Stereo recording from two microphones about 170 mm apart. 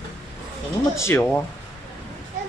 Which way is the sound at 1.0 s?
15° left (ahead or behind).